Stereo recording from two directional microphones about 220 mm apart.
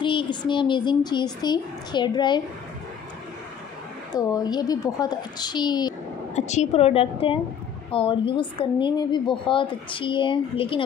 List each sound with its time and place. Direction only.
0.0 s a woman's voice: 20° left (ahead or behind)
4.1 s a woman's voice: 15° left (ahead or behind)
6.3 s a woman's voice: 30° left (ahead or behind)